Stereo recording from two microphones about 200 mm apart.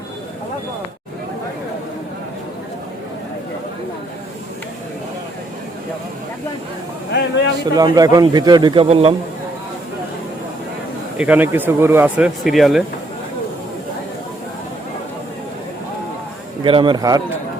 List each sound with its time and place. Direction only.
7.1 s speech: 60° left (ahead or behind)
7.6 s a man's voice: 20° right (ahead or behind)
11.2 s speech: 10° right (ahead or behind)
16.6 s a man's voice: 25° right (ahead or behind)